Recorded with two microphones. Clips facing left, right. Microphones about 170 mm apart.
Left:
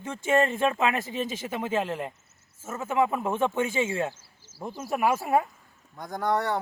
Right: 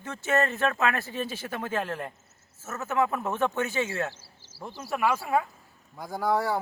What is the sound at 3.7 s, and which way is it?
Speech, 25° left (ahead or behind).